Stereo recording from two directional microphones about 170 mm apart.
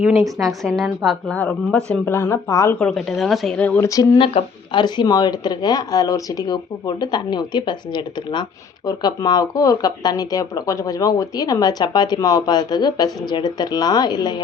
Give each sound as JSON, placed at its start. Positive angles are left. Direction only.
{"t": 0.3, "sound": "a woman's voice", "side_deg": 0}
{"t": 3.8, "sound": "speech", "side_deg": 20}